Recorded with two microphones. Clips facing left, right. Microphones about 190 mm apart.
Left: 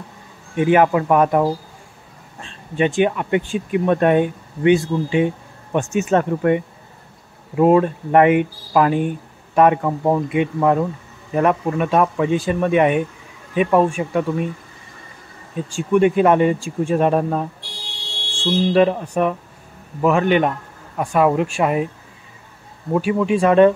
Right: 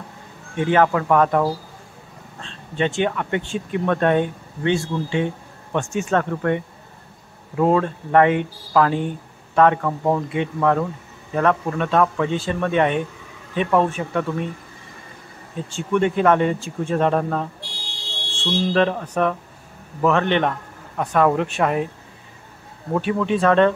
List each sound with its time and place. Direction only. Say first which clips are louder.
0.6 s speech: left 3 dB; 15° left (ahead or behind)
15.7 s speech: left 5 dB; 15° left (ahead or behind)
22.9 s speech: left 3 dB; 5° left (ahead or behind)